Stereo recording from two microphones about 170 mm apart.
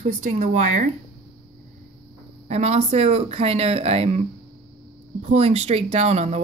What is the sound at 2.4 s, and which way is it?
Speech, 40° right (ahead or behind).